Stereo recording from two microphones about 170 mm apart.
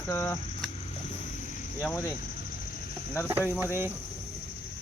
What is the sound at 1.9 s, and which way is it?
Speech, 20° left (ahead or behind).